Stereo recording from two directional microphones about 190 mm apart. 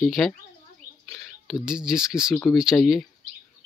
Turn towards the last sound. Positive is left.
turn(degrees=0)  # may be behind; listen again after turning